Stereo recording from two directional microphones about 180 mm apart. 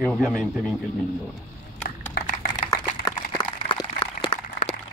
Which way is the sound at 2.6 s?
20° left (ahead or behind).